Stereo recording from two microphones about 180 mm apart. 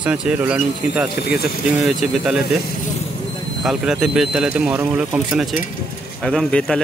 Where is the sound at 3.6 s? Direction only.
Centre (ahead or behind).